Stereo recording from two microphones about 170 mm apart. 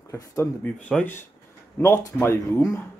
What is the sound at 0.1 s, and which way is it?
Speech, 10° left (ahead or behind).